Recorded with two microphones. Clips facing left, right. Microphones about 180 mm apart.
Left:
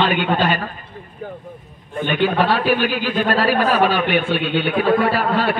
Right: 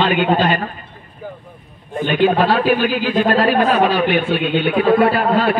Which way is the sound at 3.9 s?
35° right (ahead or behind).